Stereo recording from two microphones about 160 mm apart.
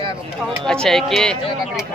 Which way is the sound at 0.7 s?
5° left (ahead or behind).